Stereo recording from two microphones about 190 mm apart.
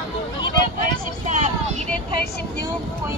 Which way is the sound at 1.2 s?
40° right (ahead or behind).